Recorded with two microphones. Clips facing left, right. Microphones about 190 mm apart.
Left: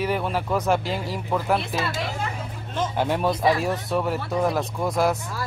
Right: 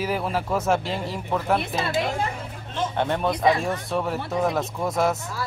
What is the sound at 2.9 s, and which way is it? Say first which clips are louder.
A man's voice: left 1 dB; 5° left (ahead or behind).